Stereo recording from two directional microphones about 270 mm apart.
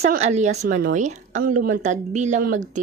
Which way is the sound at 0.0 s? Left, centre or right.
Right.